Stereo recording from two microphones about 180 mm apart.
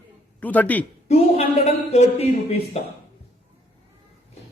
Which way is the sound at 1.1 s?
35° left (ahead or behind).